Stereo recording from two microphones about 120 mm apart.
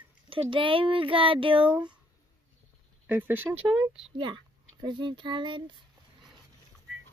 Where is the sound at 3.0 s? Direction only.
15° right (ahead or behind).